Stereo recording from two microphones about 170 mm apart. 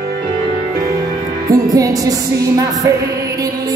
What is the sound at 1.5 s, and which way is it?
Music, 20° right (ahead or behind).